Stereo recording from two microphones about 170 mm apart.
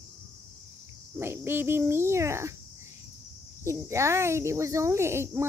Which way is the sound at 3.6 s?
15° right (ahead or behind).